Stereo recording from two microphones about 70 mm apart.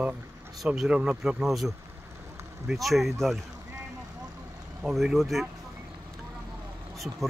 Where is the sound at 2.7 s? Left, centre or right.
Centre.